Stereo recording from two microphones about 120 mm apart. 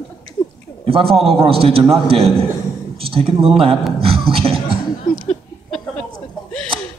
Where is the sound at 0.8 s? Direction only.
50° right (ahead or behind).